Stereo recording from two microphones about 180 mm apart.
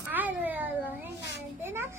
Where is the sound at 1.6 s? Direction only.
15° right (ahead or behind).